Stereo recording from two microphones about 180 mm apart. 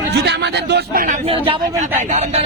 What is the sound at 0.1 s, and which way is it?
Chatter, 70° right (ahead or behind).